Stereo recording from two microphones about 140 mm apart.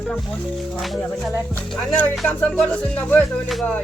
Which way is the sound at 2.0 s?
10° left (ahead or behind).